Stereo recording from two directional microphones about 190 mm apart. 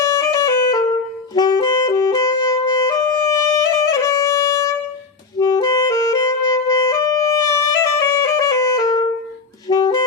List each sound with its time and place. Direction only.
0.0 s music: 15° left (ahead or behind)